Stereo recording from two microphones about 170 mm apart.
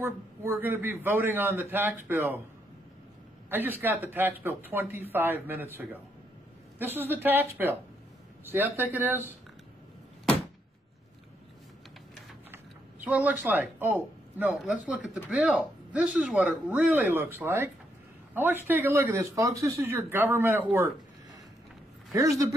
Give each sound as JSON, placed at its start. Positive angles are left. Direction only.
{"t": 0.0, "sound": "speech", "side_deg": -15}
{"t": 3.4, "sound": "speech", "side_deg": -10}
{"t": 13.0, "sound": "speech", "side_deg": -10}
{"t": 22.1, "sound": "speech", "side_deg": -20}